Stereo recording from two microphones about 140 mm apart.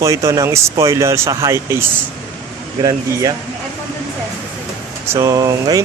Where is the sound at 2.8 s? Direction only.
25° right (ahead or behind).